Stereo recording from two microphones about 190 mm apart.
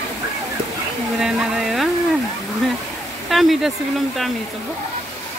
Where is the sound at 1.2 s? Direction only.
5° right (ahead or behind).